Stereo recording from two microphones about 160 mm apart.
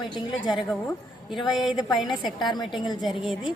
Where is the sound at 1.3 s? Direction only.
Centre (ahead or behind).